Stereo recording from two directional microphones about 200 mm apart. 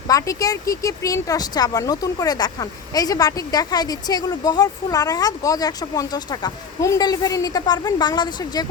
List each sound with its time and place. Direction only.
0.1 s speech: 15° left (ahead or behind)